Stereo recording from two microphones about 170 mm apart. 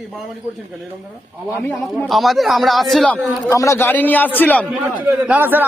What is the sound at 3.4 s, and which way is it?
A man's voice, 20° left (ahead or behind).